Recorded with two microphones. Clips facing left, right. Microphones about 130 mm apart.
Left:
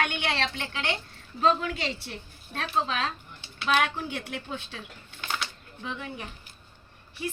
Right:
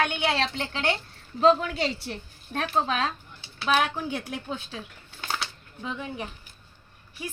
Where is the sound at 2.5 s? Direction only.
45° right (ahead or behind).